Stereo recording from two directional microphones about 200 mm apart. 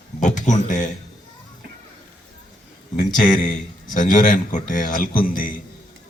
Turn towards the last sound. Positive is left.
turn(degrees=40)  # may be behind; listen again after turning